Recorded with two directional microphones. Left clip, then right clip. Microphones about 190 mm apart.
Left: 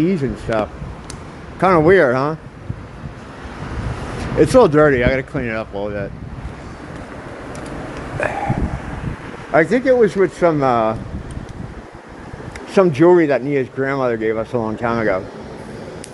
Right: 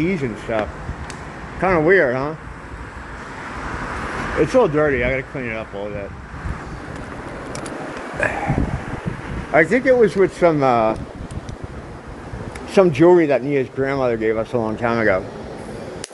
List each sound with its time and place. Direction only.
0.0 s speech: 25° left (ahead or behind)
4.4 s speech: 30° left (ahead or behind)
9.5 s speech: 15° left (ahead or behind)
12.7 s speech: 10° left (ahead or behind)